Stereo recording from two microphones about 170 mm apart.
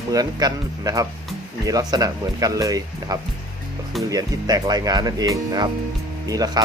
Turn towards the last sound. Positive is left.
turn(degrees=-20)  # may be behind; listen again after turning